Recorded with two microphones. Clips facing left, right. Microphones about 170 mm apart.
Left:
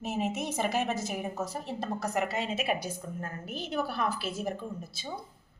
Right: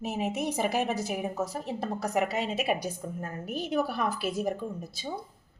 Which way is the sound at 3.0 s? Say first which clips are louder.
Right 3 dB; 25° right (ahead or behind).